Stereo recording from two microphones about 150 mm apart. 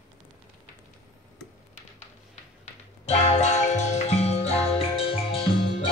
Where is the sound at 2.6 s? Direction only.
50° left (ahead or behind).